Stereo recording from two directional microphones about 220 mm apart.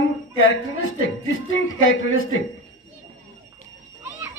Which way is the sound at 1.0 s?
65° left (ahead or behind).